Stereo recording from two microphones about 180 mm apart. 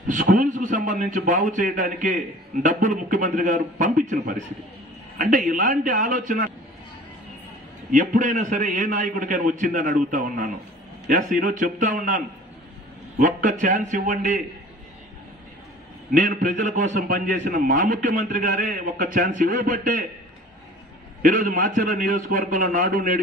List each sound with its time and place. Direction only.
0.1 s a man's voice: 45° right (ahead or behind)
7.9 s a man's voice: 45° right (ahead or behind)
13.2 s a man's voice: 45° right (ahead or behind)
16.1 s a man's voice: 45° right (ahead or behind)
21.2 s a man's voice: 50° right (ahead or behind)